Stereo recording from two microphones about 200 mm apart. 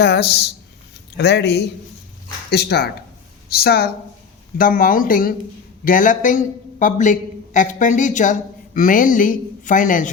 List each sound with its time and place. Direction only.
0.0 s a man's voice: 55° left (ahead or behind)